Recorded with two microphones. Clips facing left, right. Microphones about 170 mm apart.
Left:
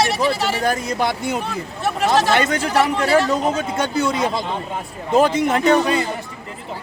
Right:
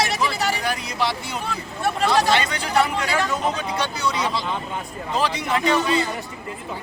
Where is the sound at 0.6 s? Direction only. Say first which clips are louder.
Left 5 dB; 45° left (ahead or behind).